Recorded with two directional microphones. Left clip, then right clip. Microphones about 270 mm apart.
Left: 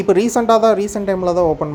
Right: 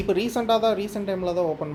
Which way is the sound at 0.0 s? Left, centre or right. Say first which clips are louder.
Left 10 dB; left.